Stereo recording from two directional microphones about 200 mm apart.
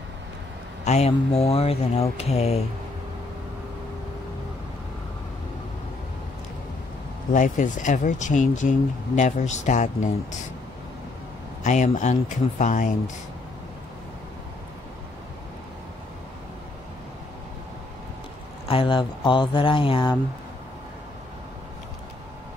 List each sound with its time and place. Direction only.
0.8 s speech: 35° left (ahead or behind)
7.3 s speech: 40° left (ahead or behind)
11.6 s speech: 35° left (ahead or behind)
18.7 s speech: 25° left (ahead or behind)